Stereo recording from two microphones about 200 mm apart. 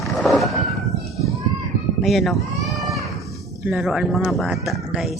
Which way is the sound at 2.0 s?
Centre (ahead or behind).